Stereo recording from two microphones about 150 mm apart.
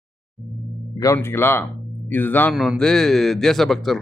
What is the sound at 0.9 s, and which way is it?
Speech, 20° left (ahead or behind).